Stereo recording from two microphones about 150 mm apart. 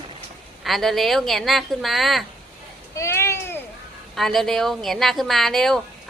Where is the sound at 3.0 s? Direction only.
15° left (ahead or behind).